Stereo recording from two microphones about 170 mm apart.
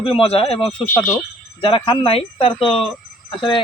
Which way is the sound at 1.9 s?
35° left (ahead or behind).